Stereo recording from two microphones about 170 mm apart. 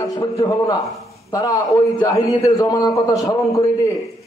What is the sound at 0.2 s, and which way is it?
A man's voice, 20° left (ahead or behind).